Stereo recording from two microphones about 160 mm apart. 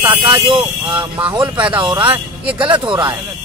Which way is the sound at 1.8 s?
25° right (ahead or behind).